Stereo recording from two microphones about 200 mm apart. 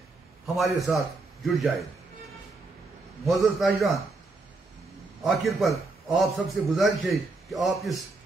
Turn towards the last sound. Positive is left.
turn(degrees=0)  # may be behind; listen again after turning